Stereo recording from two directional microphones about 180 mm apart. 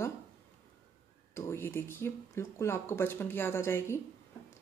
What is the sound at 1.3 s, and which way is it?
Speech, 15° left (ahead or behind).